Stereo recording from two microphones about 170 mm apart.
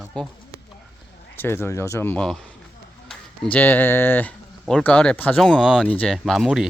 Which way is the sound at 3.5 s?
10° left (ahead or behind).